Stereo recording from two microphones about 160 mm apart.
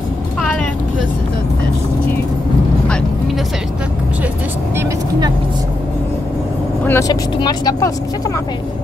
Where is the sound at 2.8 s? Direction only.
Centre (ahead or behind).